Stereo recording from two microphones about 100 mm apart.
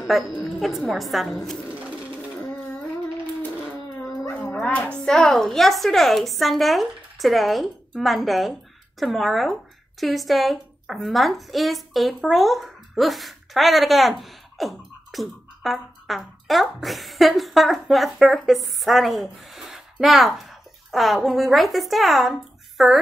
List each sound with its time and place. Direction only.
0.0 s a woman's voice: centre (ahead or behind)
4.0 s dog: 25° left (ahead or behind)
4.6 s a woman's voice: 10° left (ahead or behind)